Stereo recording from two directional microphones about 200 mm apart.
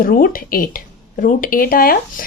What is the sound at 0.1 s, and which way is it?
A woman's voice, 45° left (ahead or behind).